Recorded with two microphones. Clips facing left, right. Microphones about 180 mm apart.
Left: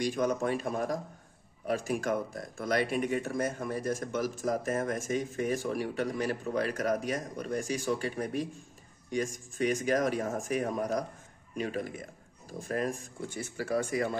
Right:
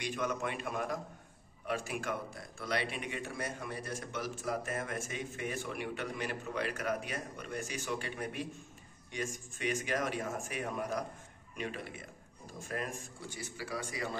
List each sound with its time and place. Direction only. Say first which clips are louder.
0.0 s speech: left 7 dB; 40° left (ahead or behind)